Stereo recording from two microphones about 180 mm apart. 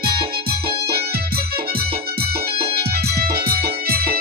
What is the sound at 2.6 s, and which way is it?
Music, 30° right (ahead or behind).